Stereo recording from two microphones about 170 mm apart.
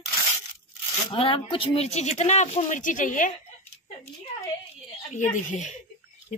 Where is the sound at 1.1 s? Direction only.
30° left (ahead or behind); by 3.3 s 50° left (ahead or behind).